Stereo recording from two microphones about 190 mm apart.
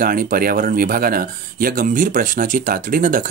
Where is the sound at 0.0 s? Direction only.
50° right (ahead or behind).